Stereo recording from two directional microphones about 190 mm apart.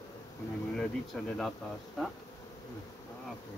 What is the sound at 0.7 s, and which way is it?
Speech, 5° left (ahead or behind).